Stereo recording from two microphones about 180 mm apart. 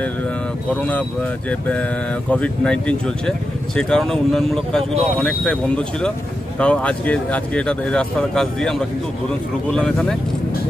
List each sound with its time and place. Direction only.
0.7 s speech: 10° left (ahead or behind)